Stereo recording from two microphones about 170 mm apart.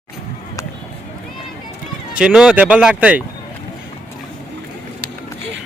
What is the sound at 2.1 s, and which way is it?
Speech, 5° right (ahead or behind).